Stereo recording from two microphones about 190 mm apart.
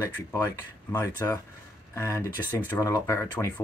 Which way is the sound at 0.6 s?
15° left (ahead or behind).